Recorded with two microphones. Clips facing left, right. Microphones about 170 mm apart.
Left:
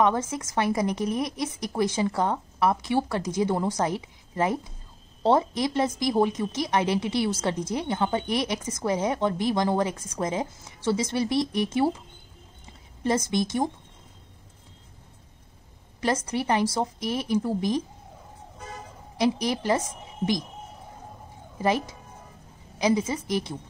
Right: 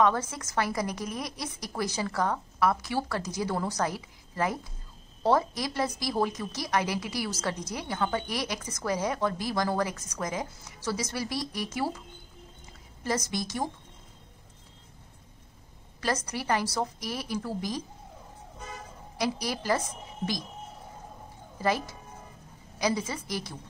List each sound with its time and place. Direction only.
0.0 s a woman's voice: 20° left (ahead or behind)
13.0 s a woman's voice: 20° left (ahead or behind)
16.3 s a woman's voice: 20° left (ahead or behind)
19.1 s a woman's voice: 20° left (ahead or behind)
21.5 s a woman's voice: 20° left (ahead or behind)